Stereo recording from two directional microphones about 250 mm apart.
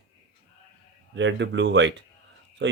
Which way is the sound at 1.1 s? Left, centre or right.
Right.